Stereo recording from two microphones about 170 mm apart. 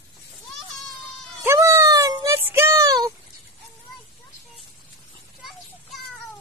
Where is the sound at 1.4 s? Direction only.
15° right (ahead or behind).